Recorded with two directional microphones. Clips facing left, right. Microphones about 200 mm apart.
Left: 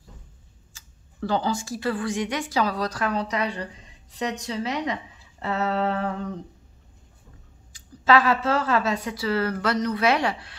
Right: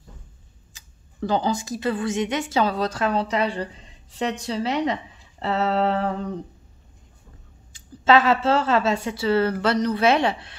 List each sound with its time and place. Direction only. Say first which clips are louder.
0.7 s speech: right 3 dB; 20° right (ahead or behind)
7.7 s speech: right 2 dB; 25° right (ahead or behind)